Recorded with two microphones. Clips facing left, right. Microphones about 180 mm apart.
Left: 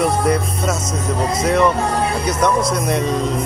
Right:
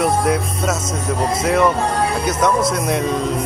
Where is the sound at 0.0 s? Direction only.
Centre (ahead or behind).